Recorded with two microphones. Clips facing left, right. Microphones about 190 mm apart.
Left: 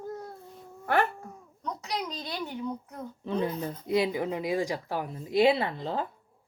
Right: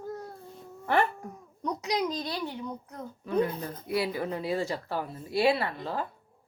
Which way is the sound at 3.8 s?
20° left (ahead or behind).